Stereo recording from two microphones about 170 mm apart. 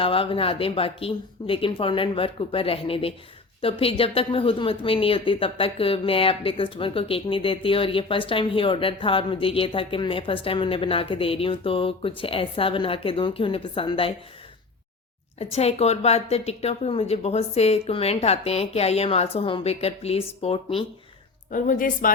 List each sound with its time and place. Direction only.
0.0 s speech: 30° left (ahead or behind)
15.4 s speech: 40° left (ahead or behind)
21.5 s a woman's voice: 50° left (ahead or behind)